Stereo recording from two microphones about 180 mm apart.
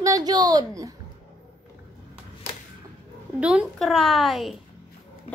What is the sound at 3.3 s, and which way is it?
A woman's voice, 5° right (ahead or behind).